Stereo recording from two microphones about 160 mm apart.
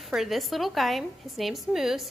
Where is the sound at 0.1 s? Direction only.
Centre (ahead or behind).